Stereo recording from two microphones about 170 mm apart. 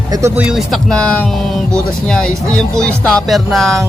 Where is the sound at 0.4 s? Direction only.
Centre (ahead or behind).